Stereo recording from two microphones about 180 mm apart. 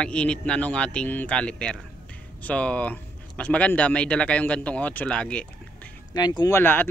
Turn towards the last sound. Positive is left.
turn(degrees=10)  # may be behind; listen again after turning